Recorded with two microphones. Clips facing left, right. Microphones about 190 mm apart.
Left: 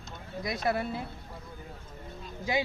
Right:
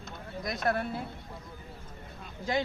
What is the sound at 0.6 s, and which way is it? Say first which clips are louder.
Speech: even; 10° left (ahead or behind).